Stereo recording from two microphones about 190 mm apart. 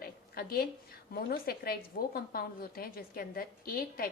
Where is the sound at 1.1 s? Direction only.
50° left (ahead or behind).